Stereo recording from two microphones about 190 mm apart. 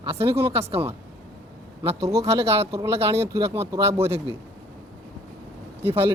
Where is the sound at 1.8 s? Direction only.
20° right (ahead or behind).